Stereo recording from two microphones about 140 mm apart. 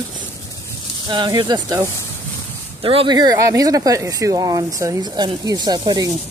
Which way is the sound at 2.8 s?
40° right (ahead or behind).